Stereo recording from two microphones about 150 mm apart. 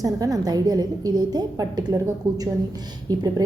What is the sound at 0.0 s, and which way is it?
A woman's voice, 25° right (ahead or behind).